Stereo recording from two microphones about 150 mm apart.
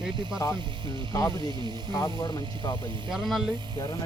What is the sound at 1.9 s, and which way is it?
Speech, 25° left (ahead or behind).